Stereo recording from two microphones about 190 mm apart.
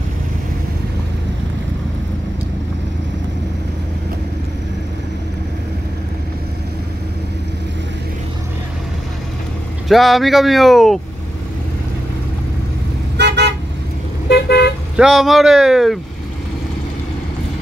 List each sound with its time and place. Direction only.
9.8 s speech: centre (ahead or behind)
13.2 s car: 60° right (ahead or behind)
14.3 s car: 60° left (ahead or behind)
15.0 s speech: 5° right (ahead or behind)